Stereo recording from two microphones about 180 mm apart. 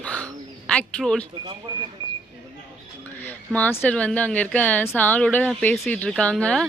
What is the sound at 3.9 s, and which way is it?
Speech, 5° left (ahead or behind).